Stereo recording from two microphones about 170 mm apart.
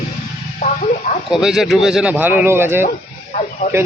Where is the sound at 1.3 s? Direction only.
Centre (ahead or behind).